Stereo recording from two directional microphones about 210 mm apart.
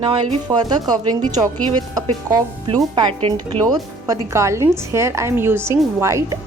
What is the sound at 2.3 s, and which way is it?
A woman's voice, 25° right (ahead or behind).